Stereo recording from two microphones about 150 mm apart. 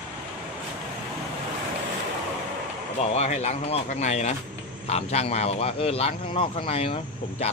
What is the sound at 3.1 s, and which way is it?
A man's voice, 45° left (ahead or behind).